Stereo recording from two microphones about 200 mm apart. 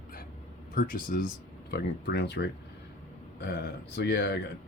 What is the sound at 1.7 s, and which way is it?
Speech, 55° left (ahead or behind).